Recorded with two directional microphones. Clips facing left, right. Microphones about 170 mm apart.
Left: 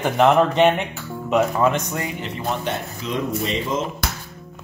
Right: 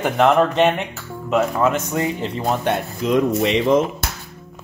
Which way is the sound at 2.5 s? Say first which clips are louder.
Right 5 dB; 55° right (ahead or behind).